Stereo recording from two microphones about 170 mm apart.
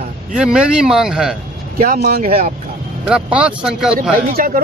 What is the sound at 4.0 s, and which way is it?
Speech, 60° right (ahead or behind).